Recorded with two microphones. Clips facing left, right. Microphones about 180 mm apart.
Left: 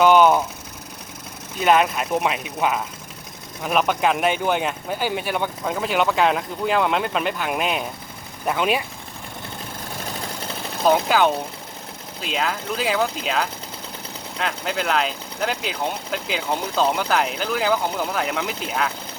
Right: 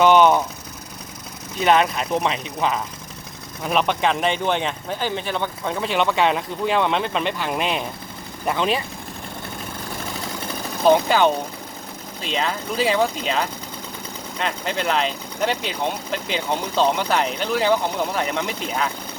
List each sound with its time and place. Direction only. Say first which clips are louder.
0.0 s vehicle: even; 5° left (ahead or behind)
1.5 s speech: even; 5° left (ahead or behind)
10.8 s speech: right 2 dB; centre (ahead or behind)